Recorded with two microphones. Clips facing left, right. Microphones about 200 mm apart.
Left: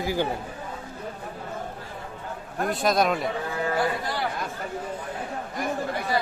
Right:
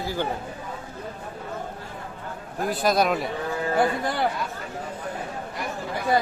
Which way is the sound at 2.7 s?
Centre (ahead or behind).